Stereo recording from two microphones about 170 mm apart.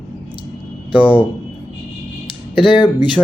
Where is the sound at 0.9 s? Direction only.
30° left (ahead or behind).